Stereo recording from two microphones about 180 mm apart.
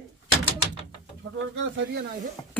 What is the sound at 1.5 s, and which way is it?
Speech, 90° right.